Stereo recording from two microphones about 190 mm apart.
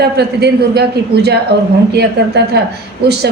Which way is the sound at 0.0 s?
60° right (ahead or behind).